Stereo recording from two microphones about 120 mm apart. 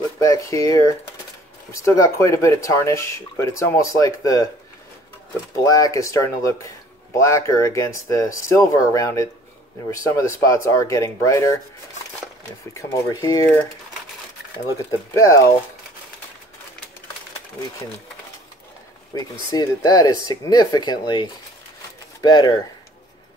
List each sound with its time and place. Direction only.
0.2 s speech: 25° left (ahead or behind)
5.6 s speech: 30° left (ahead or behind)
12.7 s speech: 25° left (ahead or behind)
14.9 s speech: 25° left (ahead or behind)
19.5 s speech: 35° left (ahead or behind)